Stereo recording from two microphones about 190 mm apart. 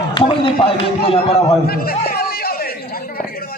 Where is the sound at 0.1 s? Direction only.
25° left (ahead or behind).